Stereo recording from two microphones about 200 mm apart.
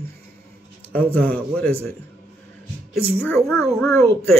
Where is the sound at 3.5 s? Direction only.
15° left (ahead or behind).